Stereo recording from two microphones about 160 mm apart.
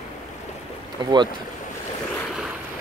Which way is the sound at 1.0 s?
30° right (ahead or behind).